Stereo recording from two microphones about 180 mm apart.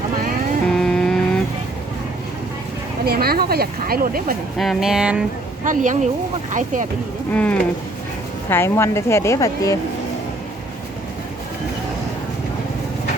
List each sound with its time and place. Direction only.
0.7 s a sound: 5° left (ahead or behind)
3.0 s speech: 60° right (ahead or behind)
4.5 s speech: centre (ahead or behind)
5.6 s a woman's voice: 45° right (ahead or behind)
7.3 s a woman's voice: 5° left (ahead or behind)